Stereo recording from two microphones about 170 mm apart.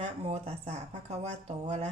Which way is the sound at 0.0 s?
40° right (ahead or behind).